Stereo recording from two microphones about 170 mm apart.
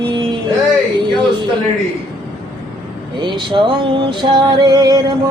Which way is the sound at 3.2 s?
30° right (ahead or behind).